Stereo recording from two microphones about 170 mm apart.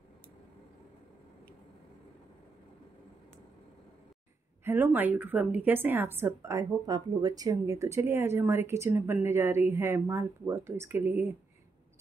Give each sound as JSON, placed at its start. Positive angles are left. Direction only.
{"t": 4.6, "sound": "speech", "side_deg": -15}